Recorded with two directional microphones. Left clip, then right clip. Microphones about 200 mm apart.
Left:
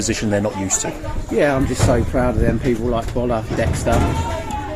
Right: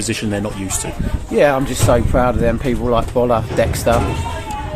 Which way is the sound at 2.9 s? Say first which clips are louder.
Right 6 dB; 40° right (ahead or behind).